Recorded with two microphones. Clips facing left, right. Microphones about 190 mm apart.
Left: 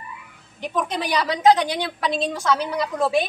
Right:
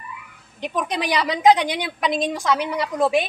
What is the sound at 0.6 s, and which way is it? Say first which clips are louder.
A woman's voice: even; 15° right (ahead or behind).